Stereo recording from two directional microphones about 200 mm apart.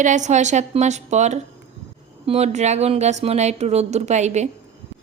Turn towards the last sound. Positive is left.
turn(degrees=-35)  # may be behind; listen again after turning